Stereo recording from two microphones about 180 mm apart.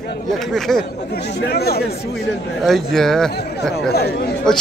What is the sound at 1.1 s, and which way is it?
Speech, 60° left (ahead or behind).